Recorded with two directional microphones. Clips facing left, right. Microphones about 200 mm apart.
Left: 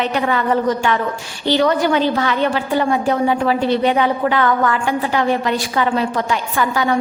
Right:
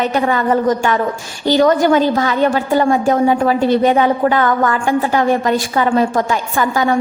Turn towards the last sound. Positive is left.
turn(degrees=-45)  # may be behind; listen again after turning